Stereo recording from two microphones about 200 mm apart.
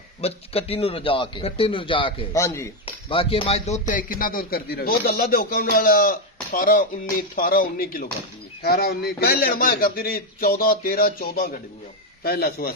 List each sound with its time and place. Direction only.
0.2 s a man's voice: 30° left (ahead or behind)
2.3 s speech: 15° left (ahead or behind)
2.8 s a man's voice: 25° left (ahead or behind); by 12.7 s 50° left (ahead or behind)